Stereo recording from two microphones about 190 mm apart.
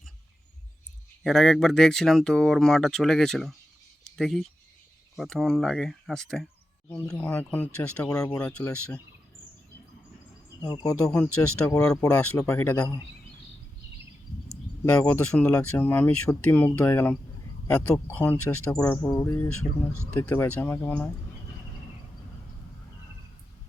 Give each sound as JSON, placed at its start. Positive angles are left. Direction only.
{"t": 1.2, "sound": "speech", "side_deg": 0}
{"t": 10.6, "sound": "speech", "side_deg": 20}
{"t": 11.1, "sound": "speech", "side_deg": 5}
{"t": 11.7, "sound": "speech", "side_deg": 15}
{"t": 14.9, "sound": "speech", "side_deg": 10}